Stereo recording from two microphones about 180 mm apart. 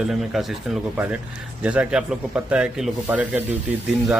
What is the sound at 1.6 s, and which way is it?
Speech, 5° right (ahead or behind).